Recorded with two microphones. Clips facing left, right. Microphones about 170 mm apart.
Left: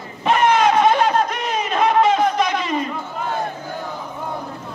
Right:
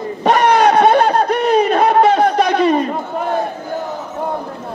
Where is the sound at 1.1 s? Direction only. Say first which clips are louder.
Right 7 dB; 35° right (ahead or behind).